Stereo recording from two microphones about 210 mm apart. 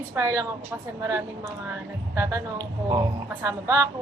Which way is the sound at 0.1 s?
15° right (ahead or behind).